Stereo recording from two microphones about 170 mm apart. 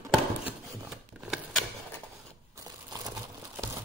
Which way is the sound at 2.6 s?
25° right (ahead or behind).